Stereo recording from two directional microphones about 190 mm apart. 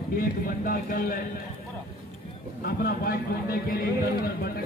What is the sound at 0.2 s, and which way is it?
A man's voice, 50° left (ahead or behind).